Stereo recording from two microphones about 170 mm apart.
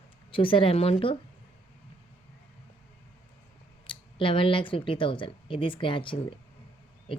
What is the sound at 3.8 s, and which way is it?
Speech, 30° left (ahead or behind).